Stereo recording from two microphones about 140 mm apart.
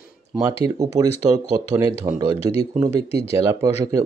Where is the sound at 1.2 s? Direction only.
55° right (ahead or behind).